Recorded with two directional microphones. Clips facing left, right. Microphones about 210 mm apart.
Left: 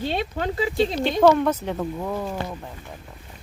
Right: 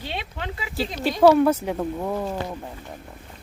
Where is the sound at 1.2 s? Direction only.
5° right (ahead or behind).